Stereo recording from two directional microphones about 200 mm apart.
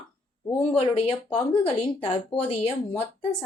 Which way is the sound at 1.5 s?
25° left (ahead or behind).